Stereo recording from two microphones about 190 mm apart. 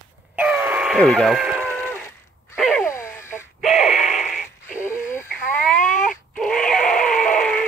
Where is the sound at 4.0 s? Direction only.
40° left (ahead or behind).